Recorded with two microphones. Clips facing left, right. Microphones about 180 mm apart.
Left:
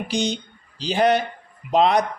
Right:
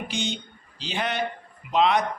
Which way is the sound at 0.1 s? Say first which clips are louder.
Left 6 dB; 35° left (ahead or behind).